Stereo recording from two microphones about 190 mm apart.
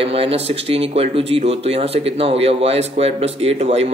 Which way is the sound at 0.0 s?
30° right (ahead or behind).